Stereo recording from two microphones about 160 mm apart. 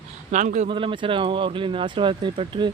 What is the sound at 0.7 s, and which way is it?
Speech, 35° right (ahead or behind).